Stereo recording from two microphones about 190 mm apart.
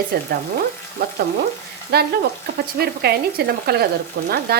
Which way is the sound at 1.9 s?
55° right (ahead or behind).